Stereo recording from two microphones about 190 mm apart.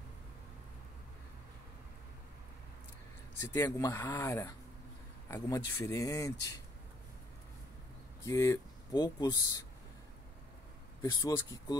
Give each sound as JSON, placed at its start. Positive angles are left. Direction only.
{"t": 3.3, "sound": "speech", "side_deg": 15}
{"t": 8.2, "sound": "speech", "side_deg": 15}
{"t": 11.0, "sound": "speech", "side_deg": 20}